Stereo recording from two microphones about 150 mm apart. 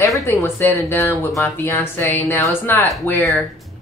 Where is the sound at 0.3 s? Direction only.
15° left (ahead or behind).